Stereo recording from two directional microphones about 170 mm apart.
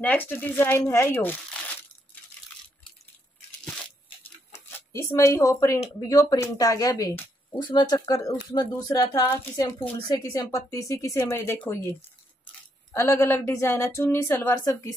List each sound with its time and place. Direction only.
0.0 s speech: 10° left (ahead or behind)
4.5 s speech: 15° left (ahead or behind)
12.9 s speech: 15° left (ahead or behind)